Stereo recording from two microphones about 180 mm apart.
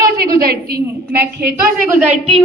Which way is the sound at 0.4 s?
65° right (ahead or behind).